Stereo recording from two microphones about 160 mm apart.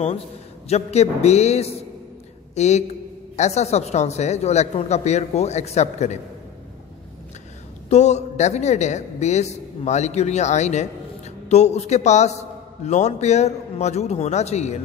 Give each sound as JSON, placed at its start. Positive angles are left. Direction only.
{"t": 0.7, "sound": "a man's voice", "side_deg": 45}
{"t": 7.9, "sound": "a man's voice", "side_deg": 45}